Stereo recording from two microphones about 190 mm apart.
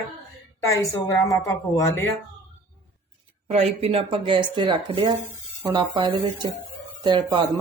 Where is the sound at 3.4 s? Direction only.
35° right (ahead or behind).